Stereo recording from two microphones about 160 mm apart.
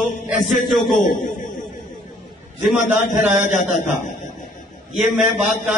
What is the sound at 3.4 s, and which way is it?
Speech, 50° left (ahead or behind).